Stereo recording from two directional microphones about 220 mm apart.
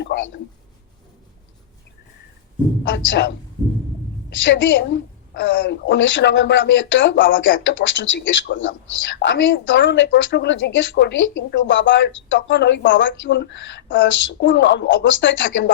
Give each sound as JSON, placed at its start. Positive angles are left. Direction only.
{"t": 0.0, "sound": "speech", "side_deg": 55}
{"t": 2.8, "sound": "a man's voice", "side_deg": 55}
{"t": 4.4, "sound": "a woman's voice", "side_deg": 55}